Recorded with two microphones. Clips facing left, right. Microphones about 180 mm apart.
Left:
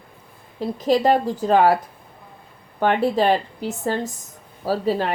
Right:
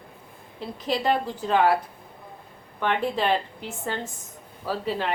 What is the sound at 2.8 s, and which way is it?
Speech, 40° left (ahead or behind).